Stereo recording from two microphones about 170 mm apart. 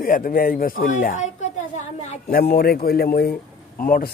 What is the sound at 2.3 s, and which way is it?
Speech, 60° left (ahead or behind).